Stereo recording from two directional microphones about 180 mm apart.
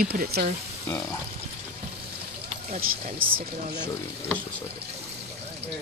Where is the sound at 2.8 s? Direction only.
55° right (ahead or behind).